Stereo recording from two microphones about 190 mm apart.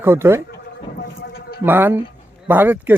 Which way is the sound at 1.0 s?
55° left (ahead or behind).